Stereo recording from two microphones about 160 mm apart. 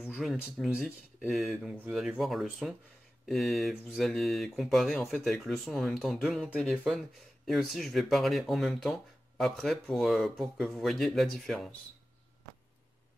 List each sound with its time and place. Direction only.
0.1 s speech: centre (ahead or behind)